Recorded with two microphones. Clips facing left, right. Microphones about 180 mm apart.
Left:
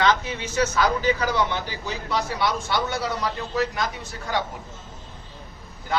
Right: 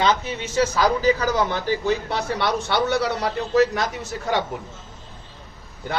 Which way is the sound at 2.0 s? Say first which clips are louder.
Right 1 dB; 65° right (ahead or behind).